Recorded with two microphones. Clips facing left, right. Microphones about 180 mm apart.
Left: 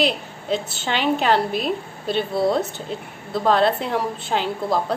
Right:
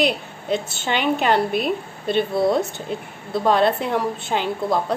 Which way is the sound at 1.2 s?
5° right (ahead or behind).